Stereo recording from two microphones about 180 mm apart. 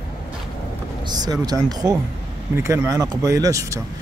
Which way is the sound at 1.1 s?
25° right (ahead or behind).